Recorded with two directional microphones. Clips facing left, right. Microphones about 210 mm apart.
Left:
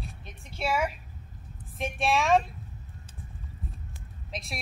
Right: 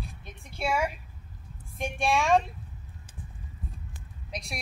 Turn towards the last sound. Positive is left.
turn(degrees=0)  # may be behind; listen again after turning